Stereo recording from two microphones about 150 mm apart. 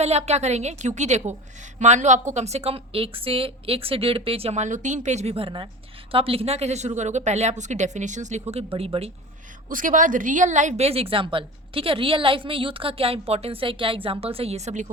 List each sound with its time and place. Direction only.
0.0 s a woman's voice: 45° right (ahead or behind)
9.6 s a woman's voice: 65° right (ahead or behind)